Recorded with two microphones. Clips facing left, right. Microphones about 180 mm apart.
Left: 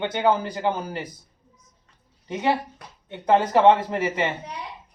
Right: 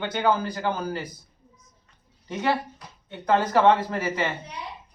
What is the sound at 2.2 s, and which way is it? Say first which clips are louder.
A man's voice: left 2 dB; 20° left (ahead or behind).